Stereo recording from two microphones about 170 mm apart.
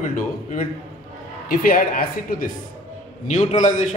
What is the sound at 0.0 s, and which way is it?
A man's voice, 50° left (ahead or behind).